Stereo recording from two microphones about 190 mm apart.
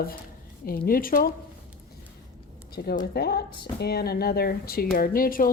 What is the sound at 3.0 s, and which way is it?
Speech, 55° left (ahead or behind).